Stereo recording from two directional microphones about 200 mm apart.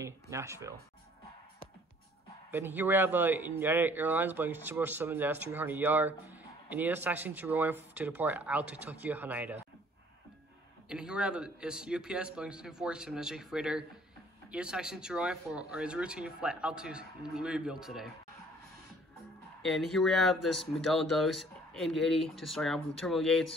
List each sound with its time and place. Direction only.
0.0 s speech: 15° right (ahead or behind)
2.5 s speech: 10° right (ahead or behind)
10.9 s speech: 5° right (ahead or behind)
19.6 s speech: centre (ahead or behind)